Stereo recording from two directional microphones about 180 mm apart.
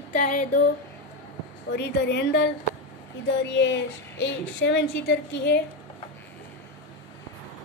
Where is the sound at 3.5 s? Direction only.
85° left; by 5.6 s 70° left (ahead or behind).